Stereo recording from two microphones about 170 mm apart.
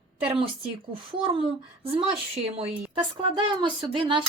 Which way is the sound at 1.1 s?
30° right (ahead or behind).